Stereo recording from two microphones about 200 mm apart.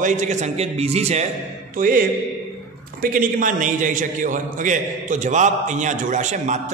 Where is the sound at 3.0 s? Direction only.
40° right (ahead or behind).